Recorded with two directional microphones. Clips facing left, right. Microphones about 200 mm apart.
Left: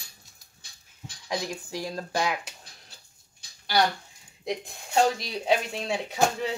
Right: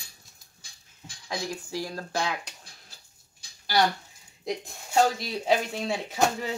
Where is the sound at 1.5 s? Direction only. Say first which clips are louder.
Even; 15° left (ahead or behind).